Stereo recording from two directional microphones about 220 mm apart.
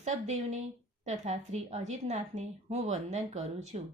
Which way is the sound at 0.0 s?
30° right (ahead or behind).